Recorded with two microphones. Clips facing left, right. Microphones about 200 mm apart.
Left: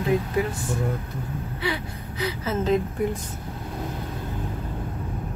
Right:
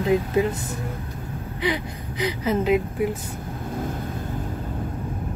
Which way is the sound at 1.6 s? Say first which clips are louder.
Right 5 dB; 15° right (ahead or behind).